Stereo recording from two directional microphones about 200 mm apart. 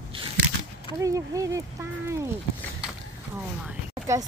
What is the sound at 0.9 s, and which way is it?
Speech, 15° right (ahead or behind).